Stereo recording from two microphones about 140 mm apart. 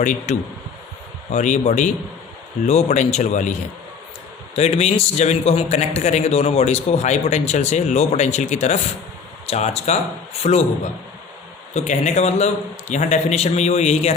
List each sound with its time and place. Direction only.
0.0 s speech: 60° left (ahead or behind)
4.5 s a man's voice: 50° left (ahead or behind)
11.7 s a man's voice: 55° left (ahead or behind)